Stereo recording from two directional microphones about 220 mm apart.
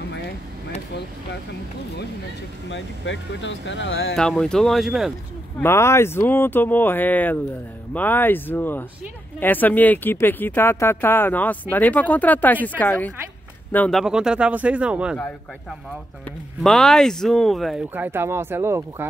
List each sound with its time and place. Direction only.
2.7 s speech: 55° left (ahead or behind)
4.1 s speech: 5° left (ahead or behind)
5.6 s speech: 10° left (ahead or behind); by 15.1 s 5° right (ahead or behind)
16.6 s speech: centre (ahead or behind)